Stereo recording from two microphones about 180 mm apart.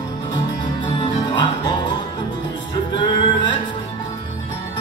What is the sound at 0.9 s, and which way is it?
Music, 25° left (ahead or behind).